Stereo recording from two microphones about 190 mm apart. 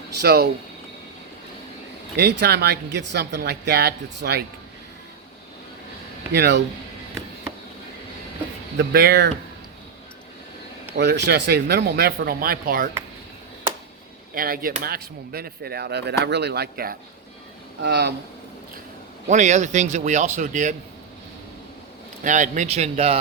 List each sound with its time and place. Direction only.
0.2 s speech: 60° right (ahead or behind)
2.1 s speech: 60° right (ahead or behind)
6.3 s speech: 60° right (ahead or behind)
8.8 s speech: 55° right (ahead or behind)
10.9 s speech: 65° right (ahead or behind); by 12.9 s 45° right (ahead or behind)
14.3 s speech: 50° right (ahead or behind)
19.3 s speech: 40° right (ahead or behind)
22.2 s speech: 40° right (ahead or behind)